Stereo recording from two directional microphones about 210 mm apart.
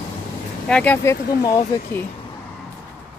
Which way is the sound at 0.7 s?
5° left (ahead or behind).